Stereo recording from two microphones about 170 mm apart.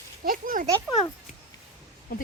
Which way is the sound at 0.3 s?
55° right (ahead or behind).